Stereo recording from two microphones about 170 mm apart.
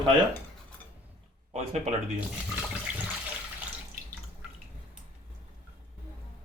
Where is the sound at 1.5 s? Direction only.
40° right (ahead or behind).